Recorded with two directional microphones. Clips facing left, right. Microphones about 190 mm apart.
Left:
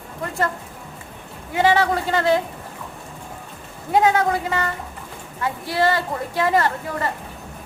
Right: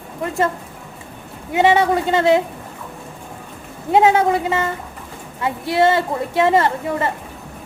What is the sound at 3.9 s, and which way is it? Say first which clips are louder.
A woman's voice: right 4 dB; 25° right (ahead or behind).